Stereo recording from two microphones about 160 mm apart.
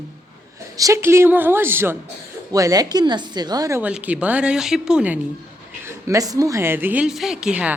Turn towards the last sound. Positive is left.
turn(degrees=-5)  # may be behind; listen again after turning